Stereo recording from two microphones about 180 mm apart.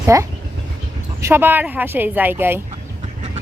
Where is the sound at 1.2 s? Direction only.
10° right (ahead or behind).